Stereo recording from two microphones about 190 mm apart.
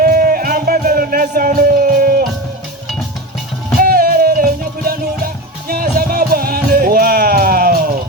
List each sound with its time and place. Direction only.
0.0 s music: 50° right (ahead or behind)
3.8 s music: 50° right (ahead or behind)
5.6 s music: 50° right (ahead or behind)